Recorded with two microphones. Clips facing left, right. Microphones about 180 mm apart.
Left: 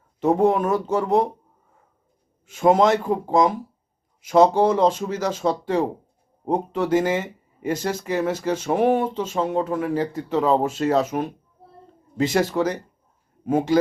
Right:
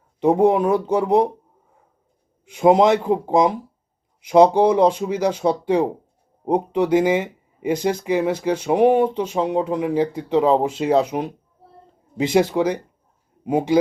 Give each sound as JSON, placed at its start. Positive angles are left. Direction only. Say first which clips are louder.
{"t": 0.2, "sound": "speech", "louder": "right 3 dB", "side_deg": -15}
{"t": 2.5, "sound": "speech", "louder": "right 3 dB", "side_deg": -15}